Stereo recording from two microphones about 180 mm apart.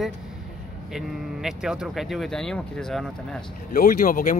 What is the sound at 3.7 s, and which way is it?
Speech, 50° left (ahead or behind).